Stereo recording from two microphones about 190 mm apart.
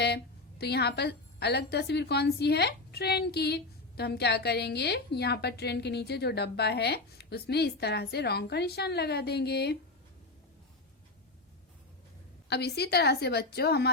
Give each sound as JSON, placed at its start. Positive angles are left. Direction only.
{"t": 0.6, "sound": "a woman's voice", "side_deg": 60}
{"t": 12.5, "sound": "a woman's voice", "side_deg": 60}